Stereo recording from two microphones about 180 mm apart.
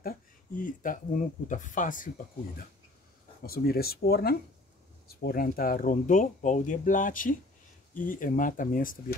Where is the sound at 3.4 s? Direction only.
55° left (ahead or behind).